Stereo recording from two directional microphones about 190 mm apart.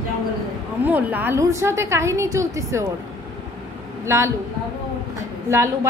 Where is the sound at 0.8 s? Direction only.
10° right (ahead or behind).